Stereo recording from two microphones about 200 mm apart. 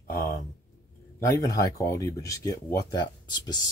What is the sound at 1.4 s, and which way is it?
Speech, 15° left (ahead or behind).